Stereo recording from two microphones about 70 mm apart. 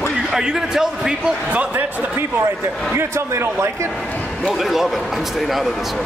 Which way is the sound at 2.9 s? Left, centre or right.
Right.